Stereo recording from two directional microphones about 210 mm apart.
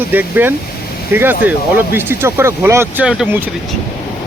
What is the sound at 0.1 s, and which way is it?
Speech, 10° right (ahead or behind).